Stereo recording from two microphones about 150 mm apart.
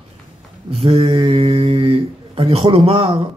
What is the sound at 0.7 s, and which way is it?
Speech, 40° right (ahead or behind).